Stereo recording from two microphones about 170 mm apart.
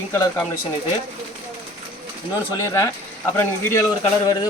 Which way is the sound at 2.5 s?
20° left (ahead or behind).